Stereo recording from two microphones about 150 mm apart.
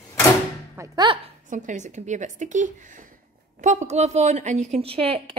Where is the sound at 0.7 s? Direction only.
30° right (ahead or behind).